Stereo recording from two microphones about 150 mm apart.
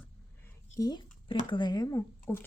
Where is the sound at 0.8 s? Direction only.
25° left (ahead or behind).